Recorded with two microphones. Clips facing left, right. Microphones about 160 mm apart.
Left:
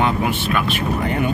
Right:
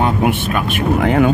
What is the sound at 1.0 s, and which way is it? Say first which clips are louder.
Speech: right 9 dB; 90° right.